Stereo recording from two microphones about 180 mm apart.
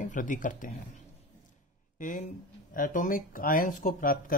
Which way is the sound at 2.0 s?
45° left (ahead or behind).